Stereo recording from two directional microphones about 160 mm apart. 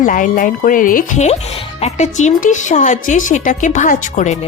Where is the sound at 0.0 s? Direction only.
55° left (ahead or behind).